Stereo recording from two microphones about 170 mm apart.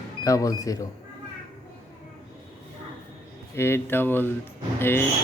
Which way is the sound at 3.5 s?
15° left (ahead or behind).